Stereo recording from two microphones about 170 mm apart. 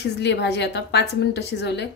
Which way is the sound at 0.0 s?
90° left.